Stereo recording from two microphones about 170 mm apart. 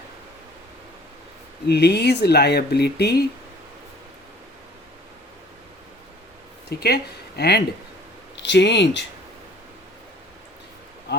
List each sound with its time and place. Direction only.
1.6 s speech: 75° left (ahead or behind)
6.7 s speech: 70° left (ahead or behind)
8.4 s speech: 90° left